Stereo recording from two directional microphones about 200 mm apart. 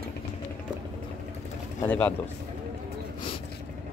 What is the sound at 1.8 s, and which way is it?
Speech, 10° left (ahead or behind).